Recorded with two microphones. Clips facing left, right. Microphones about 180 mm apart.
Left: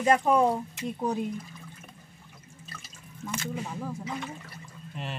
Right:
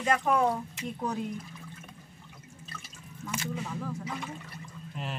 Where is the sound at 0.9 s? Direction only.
15° left (ahead or behind).